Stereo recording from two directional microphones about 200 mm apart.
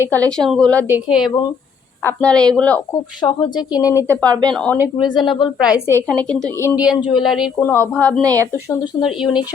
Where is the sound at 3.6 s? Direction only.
5° right (ahead or behind).